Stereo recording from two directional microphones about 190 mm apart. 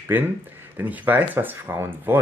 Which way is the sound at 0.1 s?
10° right (ahead or behind).